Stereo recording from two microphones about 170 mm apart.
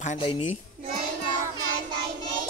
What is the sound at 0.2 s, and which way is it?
Speech, 30° left (ahead or behind).